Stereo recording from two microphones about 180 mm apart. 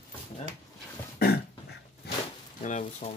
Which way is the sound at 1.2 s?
60° left (ahead or behind).